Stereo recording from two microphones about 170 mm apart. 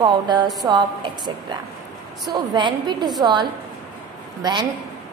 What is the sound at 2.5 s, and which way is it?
A woman's voice, 25° right (ahead or behind).